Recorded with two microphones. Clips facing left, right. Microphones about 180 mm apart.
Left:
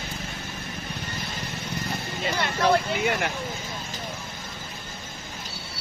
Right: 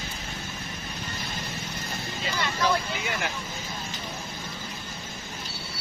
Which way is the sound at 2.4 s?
60° left (ahead or behind).